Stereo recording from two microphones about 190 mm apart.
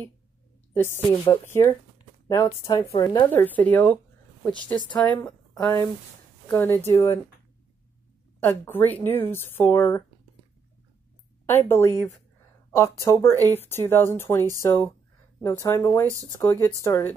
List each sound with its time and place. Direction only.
0.7 s speech: 10° left (ahead or behind)
3.3 s speech: 10° left (ahead or behind)
8.4 s speech: 10° left (ahead or behind)
11.7 s speech: 15° left (ahead or behind)